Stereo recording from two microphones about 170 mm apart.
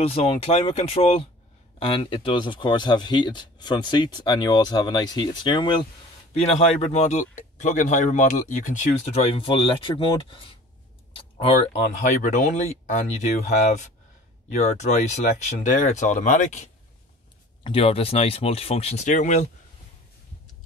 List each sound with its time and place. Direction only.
0.0 s speech: 35° left (ahead or behind)
6.3 s speech: 40° left (ahead or behind)
9.2 s speech: 30° left (ahead or behind)
12.2 s speech: 50° left (ahead or behind)
17.6 s speech: 35° left (ahead or behind)